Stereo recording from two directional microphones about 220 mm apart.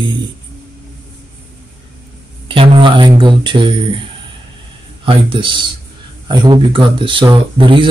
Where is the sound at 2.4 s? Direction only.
25° right (ahead or behind).